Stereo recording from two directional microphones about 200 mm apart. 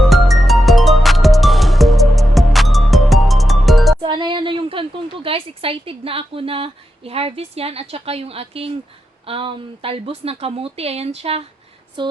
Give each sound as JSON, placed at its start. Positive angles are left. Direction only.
{"t": 0.0, "sound": "music", "side_deg": 0}
{"t": 4.0, "sound": "a woman's voice", "side_deg": -25}